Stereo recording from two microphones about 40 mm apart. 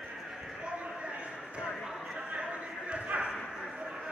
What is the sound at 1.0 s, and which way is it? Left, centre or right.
Basketball bounce, right.